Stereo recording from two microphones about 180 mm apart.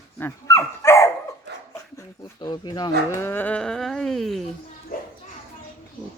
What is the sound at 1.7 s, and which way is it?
Speech, 20° left (ahead or behind).